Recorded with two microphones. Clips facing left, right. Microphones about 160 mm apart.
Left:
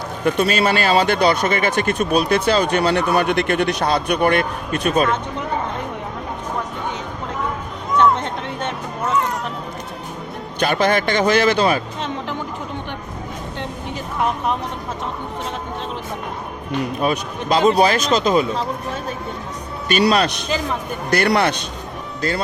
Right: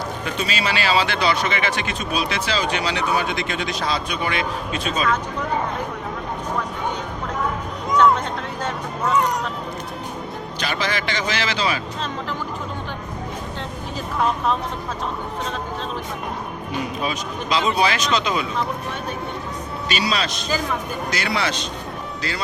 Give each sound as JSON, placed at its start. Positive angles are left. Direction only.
{"t": 0.3, "sound": "speech", "side_deg": 50}
{"t": 7.9, "sound": "a sound", "side_deg": 20}
{"t": 10.6, "sound": "speech", "side_deg": 55}
{"t": 17.0, "sound": "speech", "side_deg": 55}
{"t": 17.7, "sound": "speech", "side_deg": 45}
{"t": 19.9, "sound": "a man's voice", "side_deg": 55}